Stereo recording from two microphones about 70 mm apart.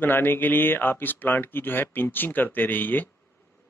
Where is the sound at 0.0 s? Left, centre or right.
Left.